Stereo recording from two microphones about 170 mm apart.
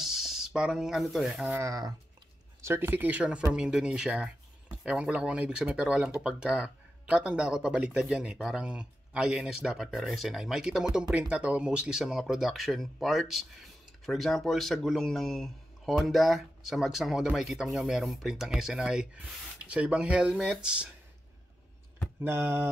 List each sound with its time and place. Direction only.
0.0 s a sound: centre (ahead or behind)
1.6 s speech: 20° right (ahead or behind)
22.2 s speech: 15° right (ahead or behind)